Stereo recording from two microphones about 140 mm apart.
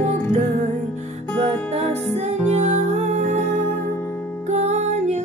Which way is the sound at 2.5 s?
55° right (ahead or behind).